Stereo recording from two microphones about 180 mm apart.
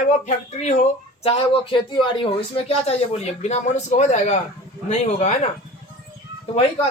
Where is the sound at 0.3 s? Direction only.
40° left (ahead or behind).